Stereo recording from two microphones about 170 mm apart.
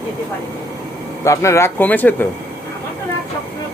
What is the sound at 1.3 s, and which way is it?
A man's voice, 15° left (ahead or behind).